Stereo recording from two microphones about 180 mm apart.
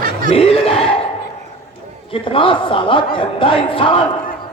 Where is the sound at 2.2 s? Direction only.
30° left (ahead or behind).